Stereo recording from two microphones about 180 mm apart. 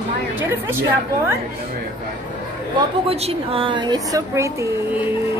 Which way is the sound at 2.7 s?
35° right (ahead or behind).